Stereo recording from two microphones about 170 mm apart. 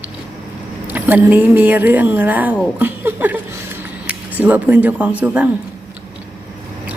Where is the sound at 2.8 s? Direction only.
10° right (ahead or behind).